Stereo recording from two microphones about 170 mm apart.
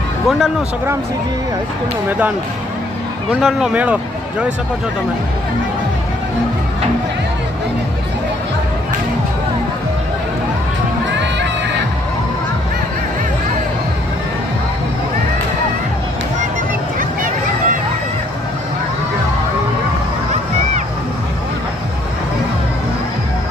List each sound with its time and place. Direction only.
0.3 s speech: centre (ahead or behind)
2.0 s speech: 10° right (ahead or behind)
3.4 s speech: 5° right (ahead or behind)
17.0 s a sound: 55° right (ahead or behind)